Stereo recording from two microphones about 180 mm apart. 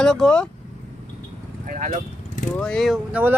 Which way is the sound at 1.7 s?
45° right (ahead or behind).